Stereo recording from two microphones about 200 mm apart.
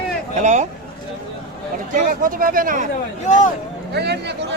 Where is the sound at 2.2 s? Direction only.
45° right (ahead or behind).